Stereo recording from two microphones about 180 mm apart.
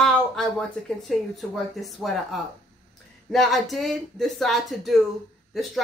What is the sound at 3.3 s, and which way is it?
Speech, centre (ahead or behind).